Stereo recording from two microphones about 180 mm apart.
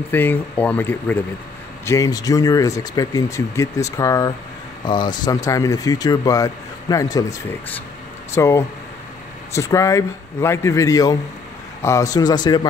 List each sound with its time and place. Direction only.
0.1 s a man's voice: 10° left (ahead or behind)
8.4 s a man's voice: 15° left (ahead or behind)